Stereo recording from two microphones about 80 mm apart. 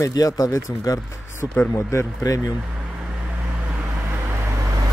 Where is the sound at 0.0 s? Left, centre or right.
Left.